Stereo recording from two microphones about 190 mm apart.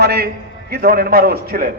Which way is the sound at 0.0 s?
55° right (ahead or behind).